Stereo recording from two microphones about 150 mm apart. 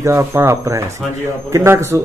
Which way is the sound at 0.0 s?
20° right (ahead or behind).